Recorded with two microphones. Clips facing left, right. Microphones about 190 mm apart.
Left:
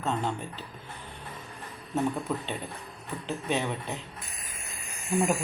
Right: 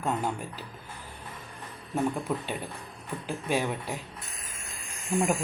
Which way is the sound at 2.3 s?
10° right (ahead or behind).